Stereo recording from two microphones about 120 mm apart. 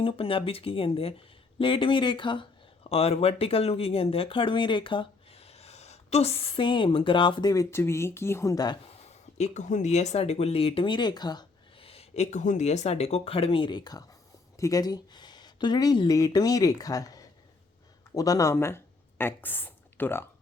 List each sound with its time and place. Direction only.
0.0 s speech: 50° left (ahead or behind)
2.9 s speech: 55° left (ahead or behind); by 8.8 s 35° left (ahead or behind)
9.0 s speech: 75° left (ahead or behind); by 11.4 s 35° left (ahead or behind)
11.8 s speech: 55° left (ahead or behind); by 20.2 s 15° left (ahead or behind)